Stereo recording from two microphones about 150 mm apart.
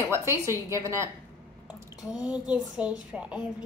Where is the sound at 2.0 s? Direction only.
5° right (ahead or behind).